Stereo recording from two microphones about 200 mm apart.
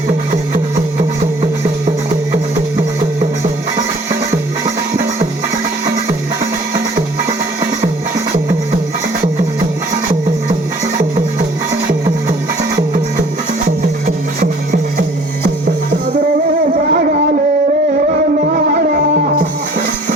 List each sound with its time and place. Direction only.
16.7 s music: 45° right (ahead or behind)
18.1 s music: 45° right (ahead or behind)